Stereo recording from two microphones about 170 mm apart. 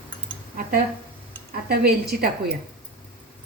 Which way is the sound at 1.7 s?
65° right (ahead or behind).